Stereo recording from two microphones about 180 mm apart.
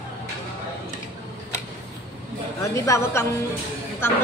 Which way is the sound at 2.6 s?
15° left (ahead or behind).